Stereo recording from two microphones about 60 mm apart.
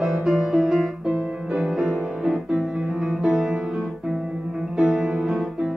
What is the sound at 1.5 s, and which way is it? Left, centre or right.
Music, centre.